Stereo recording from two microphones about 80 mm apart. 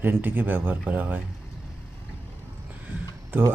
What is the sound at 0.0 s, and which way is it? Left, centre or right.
Speech, right.